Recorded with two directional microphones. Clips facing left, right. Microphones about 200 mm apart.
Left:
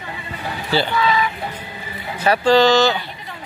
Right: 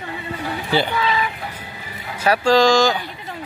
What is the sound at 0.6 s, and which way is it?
Speech, 15° right (ahead or behind).